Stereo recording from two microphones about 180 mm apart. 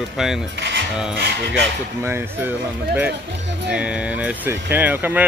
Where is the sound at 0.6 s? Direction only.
75° right (ahead or behind).